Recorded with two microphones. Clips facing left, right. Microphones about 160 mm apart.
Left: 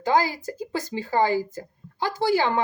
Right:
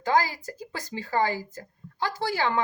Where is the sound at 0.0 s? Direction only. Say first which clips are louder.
Left 2 dB; 25° left (ahead or behind).